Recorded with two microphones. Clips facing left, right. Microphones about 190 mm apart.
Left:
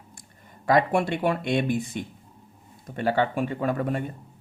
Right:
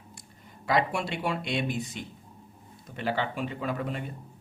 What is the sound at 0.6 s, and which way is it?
Speech, 50° left (ahead or behind).